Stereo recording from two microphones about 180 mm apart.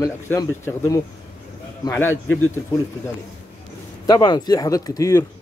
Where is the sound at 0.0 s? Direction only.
15° left (ahead or behind).